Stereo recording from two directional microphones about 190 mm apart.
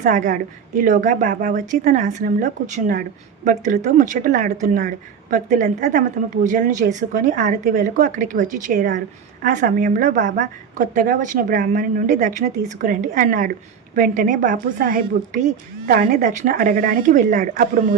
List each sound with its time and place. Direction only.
0.0 s a woman's voice: 40° right (ahead or behind)